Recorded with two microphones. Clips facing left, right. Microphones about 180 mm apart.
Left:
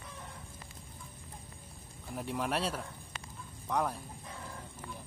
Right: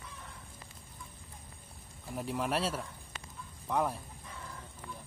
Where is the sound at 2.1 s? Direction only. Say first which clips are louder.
Right 1 dB; centre (ahead or behind).